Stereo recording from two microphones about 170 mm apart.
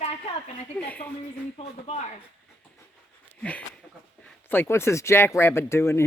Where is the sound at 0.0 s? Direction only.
40° left (ahead or behind).